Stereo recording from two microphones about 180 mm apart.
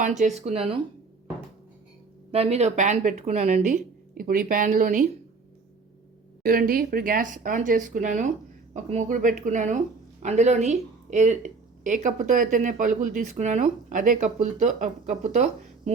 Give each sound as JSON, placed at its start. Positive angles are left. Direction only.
{"t": 0.0, "sound": "speech", "side_deg": -40}
{"t": 2.3, "sound": "speech", "side_deg": -35}
{"t": 6.4, "sound": "speech", "side_deg": -50}